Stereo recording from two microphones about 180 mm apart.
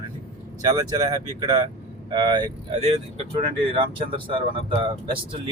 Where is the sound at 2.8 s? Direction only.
35° right (ahead or behind).